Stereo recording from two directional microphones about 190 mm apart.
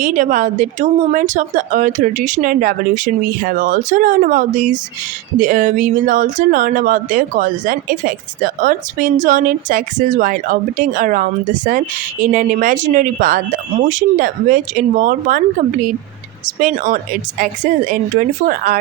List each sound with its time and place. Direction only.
0.0 s speech: 45° right (ahead or behind)
16.6 s speech: 45° right (ahead or behind)